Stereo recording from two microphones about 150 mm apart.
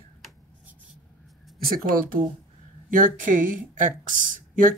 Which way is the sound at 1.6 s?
70° right (ahead or behind).